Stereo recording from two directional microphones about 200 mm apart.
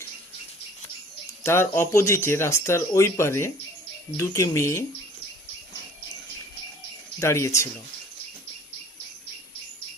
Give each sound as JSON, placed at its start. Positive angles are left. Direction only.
{"t": 1.5, "sound": "speech", "side_deg": 10}
{"t": 7.2, "sound": "speech", "side_deg": 15}